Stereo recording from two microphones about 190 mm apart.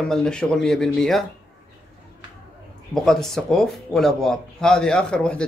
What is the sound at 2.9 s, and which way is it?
Speech, centre (ahead or behind).